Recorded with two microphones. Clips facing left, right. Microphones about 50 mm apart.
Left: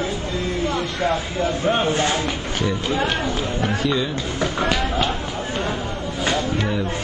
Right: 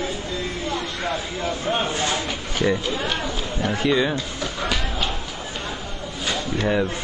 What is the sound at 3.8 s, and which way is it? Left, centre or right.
Speech, right.